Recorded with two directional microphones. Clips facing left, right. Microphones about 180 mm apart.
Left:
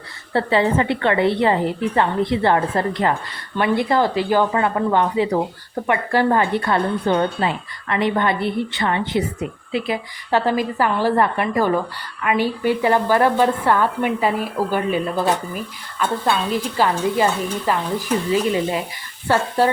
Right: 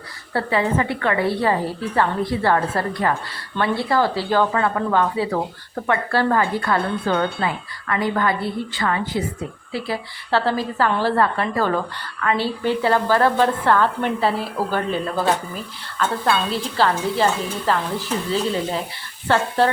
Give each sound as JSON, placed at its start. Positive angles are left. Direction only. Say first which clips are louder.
{"t": 0.3, "sound": "a woman's voice", "louder": "left 3 dB", "side_deg": 25}
{"t": 16.7, "sound": "a woman's voice", "louder": "even", "side_deg": 15}